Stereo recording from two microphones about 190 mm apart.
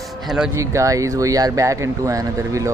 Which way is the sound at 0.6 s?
15° right (ahead or behind).